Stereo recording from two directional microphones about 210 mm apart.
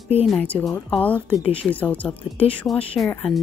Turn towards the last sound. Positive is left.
turn(degrees=5)  # may be behind; listen again after turning